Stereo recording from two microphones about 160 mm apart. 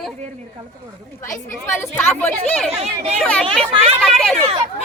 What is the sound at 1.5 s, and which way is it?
A woman's voice, 15° left (ahead or behind).